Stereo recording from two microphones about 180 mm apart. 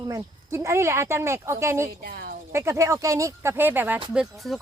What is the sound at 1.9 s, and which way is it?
Speech, 60° right (ahead or behind).